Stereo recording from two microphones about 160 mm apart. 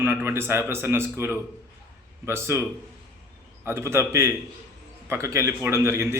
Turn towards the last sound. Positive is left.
turn(degrees=-15)  # may be behind; listen again after turning